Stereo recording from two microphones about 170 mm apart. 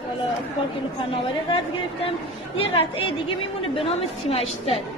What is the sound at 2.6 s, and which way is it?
A woman's voice, 35° left (ahead or behind).